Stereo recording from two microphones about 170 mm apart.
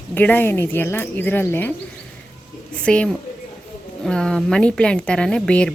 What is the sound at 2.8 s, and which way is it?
A woman's voice, 5° left (ahead or behind).